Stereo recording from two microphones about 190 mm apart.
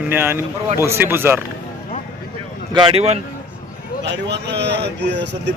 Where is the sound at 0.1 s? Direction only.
10° right (ahead or behind).